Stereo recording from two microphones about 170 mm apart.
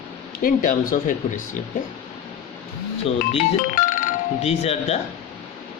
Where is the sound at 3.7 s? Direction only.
50° left (ahead or behind).